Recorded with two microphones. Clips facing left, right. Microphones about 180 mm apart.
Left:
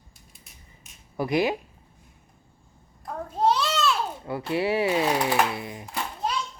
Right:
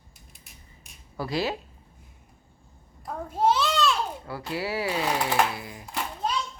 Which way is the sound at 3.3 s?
5° right (ahead or behind).